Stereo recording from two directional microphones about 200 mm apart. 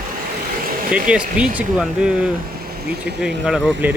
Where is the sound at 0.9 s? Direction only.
5° right (ahead or behind).